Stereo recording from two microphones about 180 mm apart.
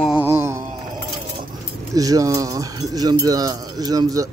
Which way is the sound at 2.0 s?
20° right (ahead or behind).